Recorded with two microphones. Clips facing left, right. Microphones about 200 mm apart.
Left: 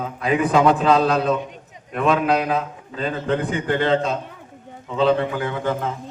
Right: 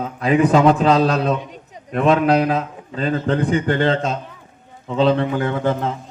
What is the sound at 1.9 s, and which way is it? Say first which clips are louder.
A man's voice: right 4 dB; 35° right (ahead or behind).